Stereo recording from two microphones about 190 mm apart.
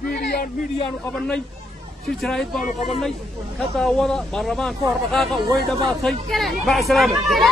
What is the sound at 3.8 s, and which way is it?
Speech, centre (ahead or behind).